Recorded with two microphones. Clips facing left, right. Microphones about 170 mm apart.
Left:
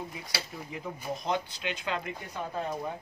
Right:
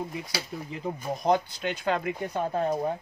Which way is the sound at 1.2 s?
50° right (ahead or behind).